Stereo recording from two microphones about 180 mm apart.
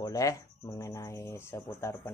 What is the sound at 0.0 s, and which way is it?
Speech, 20° left (ahead or behind).